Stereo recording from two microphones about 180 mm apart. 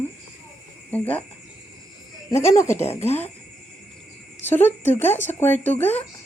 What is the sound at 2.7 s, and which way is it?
Speech, 40° left (ahead or behind).